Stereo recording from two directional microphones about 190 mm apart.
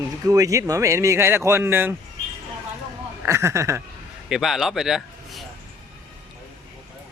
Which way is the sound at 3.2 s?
15° right (ahead or behind).